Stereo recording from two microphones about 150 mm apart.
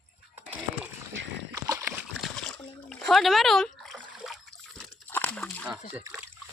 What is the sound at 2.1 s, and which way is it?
Splash, centre (ahead or behind).